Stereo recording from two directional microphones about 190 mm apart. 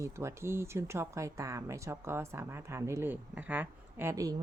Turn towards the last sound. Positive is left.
turn(degrees=-15)  # may be behind; listen again after turning